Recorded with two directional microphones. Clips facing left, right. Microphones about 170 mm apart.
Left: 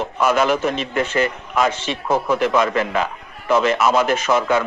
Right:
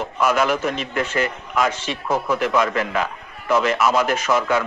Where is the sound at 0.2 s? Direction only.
25° left (ahead or behind).